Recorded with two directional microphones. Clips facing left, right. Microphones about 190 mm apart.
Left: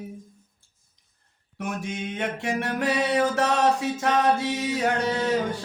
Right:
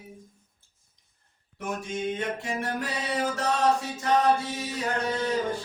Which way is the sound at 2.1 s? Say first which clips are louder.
Left 3 dB; 75° left (ahead or behind).